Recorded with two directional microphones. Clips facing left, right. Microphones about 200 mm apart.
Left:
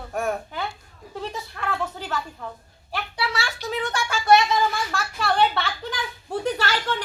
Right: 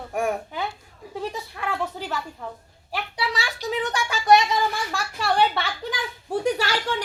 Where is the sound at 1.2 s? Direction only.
10° right (ahead or behind).